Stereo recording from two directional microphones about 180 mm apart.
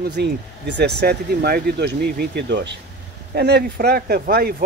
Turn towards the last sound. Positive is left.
turn(degrees=-60)  # may be behind; listen again after turning